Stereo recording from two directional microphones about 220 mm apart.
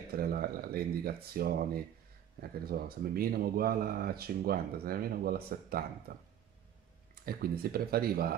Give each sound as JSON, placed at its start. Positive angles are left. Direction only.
{"t": 0.1, "sound": "speech", "side_deg": -45}
{"t": 7.2, "sound": "speech", "side_deg": -45}